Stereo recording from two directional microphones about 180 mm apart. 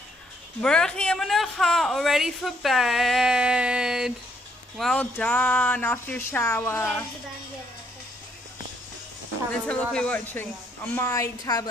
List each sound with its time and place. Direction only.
0.6 s speech: 5° left (ahead or behind)
9.5 s speech: 5° left (ahead or behind); by 11.7 s 20° left (ahead or behind)